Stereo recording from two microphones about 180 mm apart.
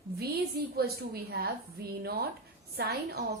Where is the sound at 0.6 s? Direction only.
60° right (ahead or behind).